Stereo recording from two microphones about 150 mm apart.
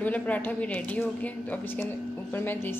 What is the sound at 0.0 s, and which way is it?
Speech, 10° left (ahead or behind).